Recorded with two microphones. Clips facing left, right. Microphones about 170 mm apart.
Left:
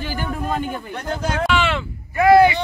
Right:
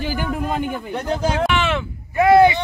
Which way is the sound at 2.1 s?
20° right (ahead or behind).